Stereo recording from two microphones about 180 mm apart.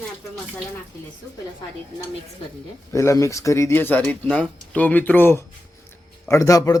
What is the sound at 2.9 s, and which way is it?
A man's voice, 15° left (ahead or behind).